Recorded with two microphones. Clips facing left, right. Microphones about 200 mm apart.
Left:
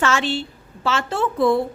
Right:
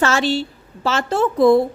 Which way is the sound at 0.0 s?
40° right (ahead or behind).